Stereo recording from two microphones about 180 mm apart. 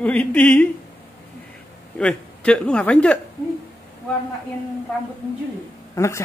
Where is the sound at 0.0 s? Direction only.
10° left (ahead or behind).